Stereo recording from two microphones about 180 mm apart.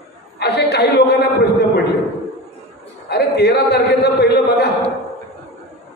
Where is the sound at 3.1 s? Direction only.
65° left (ahead or behind).